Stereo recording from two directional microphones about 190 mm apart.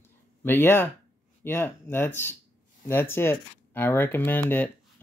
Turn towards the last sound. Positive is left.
turn(degrees=10)  # may be behind; listen again after turning